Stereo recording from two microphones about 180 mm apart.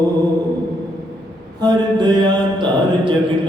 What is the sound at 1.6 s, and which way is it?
Mantra, 25° right (ahead or behind).